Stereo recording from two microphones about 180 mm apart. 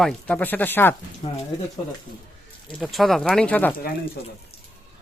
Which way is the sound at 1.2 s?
30° left (ahead or behind).